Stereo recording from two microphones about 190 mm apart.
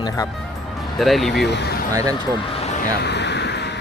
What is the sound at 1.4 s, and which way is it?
Speech, 60° left (ahead or behind).